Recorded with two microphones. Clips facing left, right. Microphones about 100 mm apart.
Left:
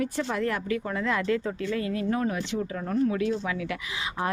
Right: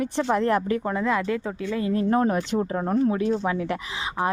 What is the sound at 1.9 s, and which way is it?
Speech, 40° right (ahead or behind).